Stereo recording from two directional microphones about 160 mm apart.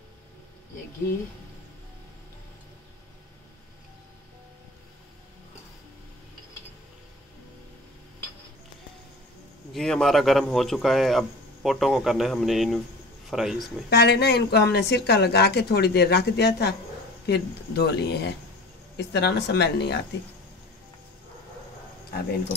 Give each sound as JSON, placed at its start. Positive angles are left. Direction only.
{"t": 9.7, "sound": "speech", "side_deg": 0}
{"t": 13.8, "sound": "a woman's voice", "side_deg": 90}